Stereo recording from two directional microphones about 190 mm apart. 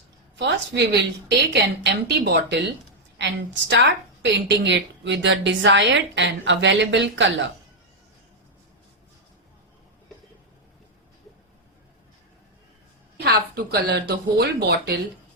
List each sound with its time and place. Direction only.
0.3 s a woman's voice: 65° right (ahead or behind)
13.1 s speech: 60° right (ahead or behind)